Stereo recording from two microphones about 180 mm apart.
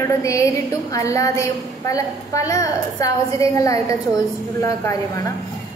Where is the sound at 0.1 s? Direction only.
15° left (ahead or behind).